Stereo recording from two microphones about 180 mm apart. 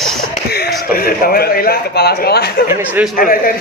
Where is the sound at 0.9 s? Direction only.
55° left (ahead or behind).